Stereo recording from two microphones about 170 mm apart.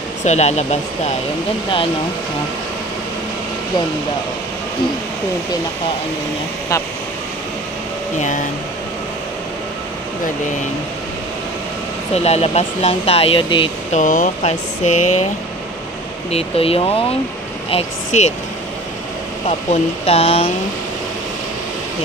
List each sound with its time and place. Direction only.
0.2 s speech: 40° left (ahead or behind)
8.2 s speech: 50° left (ahead or behind)
12.1 s speech: 40° left (ahead or behind)
13.9 s speech: 50° left (ahead or behind)
16.3 s speech: 35° left (ahead or behind)
19.7 s speech: 35° left (ahead or behind)